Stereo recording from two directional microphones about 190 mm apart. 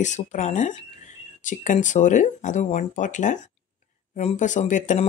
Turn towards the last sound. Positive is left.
turn(degrees=40)  # may be behind; listen again after turning